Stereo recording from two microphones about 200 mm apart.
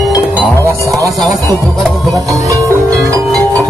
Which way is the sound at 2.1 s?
15° right (ahead or behind).